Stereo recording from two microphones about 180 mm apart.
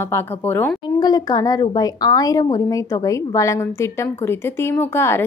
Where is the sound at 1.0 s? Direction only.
20° left (ahead or behind).